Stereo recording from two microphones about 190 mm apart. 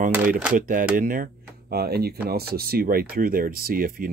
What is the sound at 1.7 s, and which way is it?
Speech, 55° right (ahead or behind).